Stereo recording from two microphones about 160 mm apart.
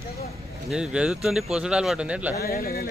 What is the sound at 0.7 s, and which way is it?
A man's voice, 5° right (ahead or behind).